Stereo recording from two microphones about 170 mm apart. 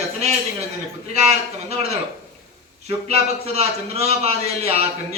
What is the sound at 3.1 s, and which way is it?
A man's voice, 40° right (ahead or behind).